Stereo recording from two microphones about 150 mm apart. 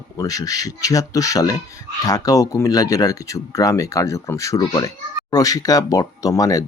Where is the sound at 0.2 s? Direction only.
25° left (ahead or behind).